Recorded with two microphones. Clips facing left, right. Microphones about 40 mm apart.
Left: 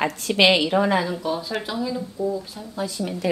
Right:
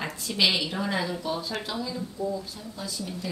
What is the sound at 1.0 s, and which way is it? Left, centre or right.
Speech, centre.